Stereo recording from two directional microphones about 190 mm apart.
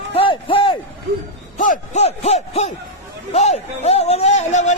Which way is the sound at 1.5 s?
40° left (ahead or behind).